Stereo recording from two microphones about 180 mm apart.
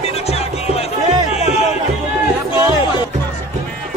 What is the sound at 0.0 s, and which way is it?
Music, 35° left (ahead or behind).